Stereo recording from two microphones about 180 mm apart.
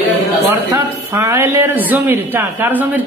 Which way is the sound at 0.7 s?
15° right (ahead or behind).